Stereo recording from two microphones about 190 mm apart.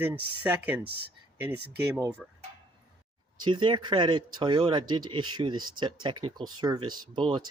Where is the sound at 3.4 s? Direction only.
25° right (ahead or behind).